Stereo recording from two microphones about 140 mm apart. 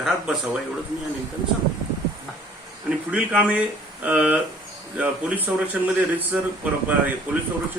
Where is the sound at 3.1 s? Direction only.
10° right (ahead or behind).